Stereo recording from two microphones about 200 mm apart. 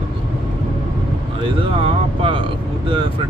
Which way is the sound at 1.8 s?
25° right (ahead or behind).